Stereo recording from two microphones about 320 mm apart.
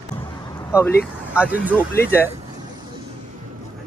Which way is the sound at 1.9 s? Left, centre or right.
Centre.